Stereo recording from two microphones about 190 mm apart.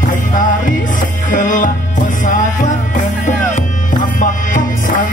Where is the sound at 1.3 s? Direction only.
45° left (ahead or behind).